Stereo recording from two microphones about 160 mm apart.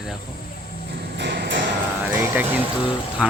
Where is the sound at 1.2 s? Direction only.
90° right.